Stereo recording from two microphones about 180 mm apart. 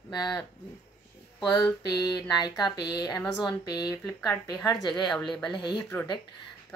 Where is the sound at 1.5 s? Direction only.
20° left (ahead or behind).